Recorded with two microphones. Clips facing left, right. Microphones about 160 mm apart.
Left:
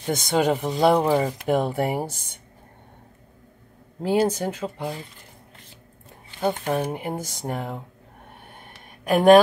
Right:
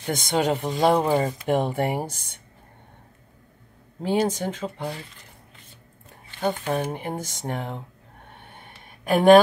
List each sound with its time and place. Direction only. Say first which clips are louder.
0.0 s speech: left 2 dB; centre (ahead or behind)
4.0 s speech: left 2 dB; 5° left (ahead or behind)
6.7 s speech: left 1 dB; 5° left (ahead or behind)
9.0 s speech: even; centre (ahead or behind)